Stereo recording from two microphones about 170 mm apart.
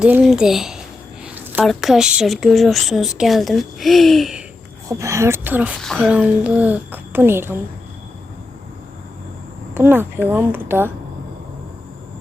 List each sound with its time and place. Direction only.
0.0 s speech: 5° right (ahead or behind)
4.9 s a woman's voice: 15° right (ahead or behind)
9.7 s a woman's voice: 10° right (ahead or behind)